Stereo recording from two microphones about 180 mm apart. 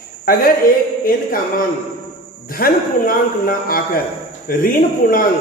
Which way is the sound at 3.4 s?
55° left (ahead or behind).